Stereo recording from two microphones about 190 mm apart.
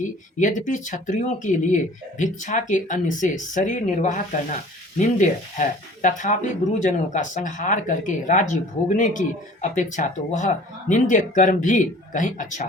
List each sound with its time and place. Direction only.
0.0 s speech: 40° left (ahead or behind)